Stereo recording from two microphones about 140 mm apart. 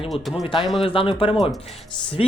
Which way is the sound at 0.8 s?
40° left (ahead or behind).